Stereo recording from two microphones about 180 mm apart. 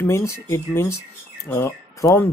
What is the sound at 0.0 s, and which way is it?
A man's voice, 15° left (ahead or behind).